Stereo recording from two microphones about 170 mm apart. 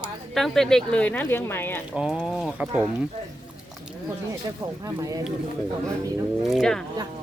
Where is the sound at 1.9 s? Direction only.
5° right (ahead or behind).